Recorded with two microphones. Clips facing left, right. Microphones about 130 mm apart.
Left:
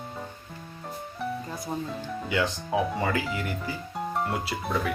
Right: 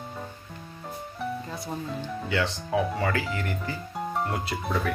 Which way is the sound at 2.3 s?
15° left (ahead or behind).